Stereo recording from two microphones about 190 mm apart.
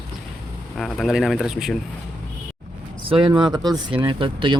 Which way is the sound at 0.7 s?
Centre (ahead or behind).